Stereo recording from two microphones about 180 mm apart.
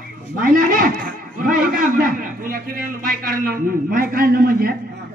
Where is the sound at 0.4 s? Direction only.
50° right (ahead or behind).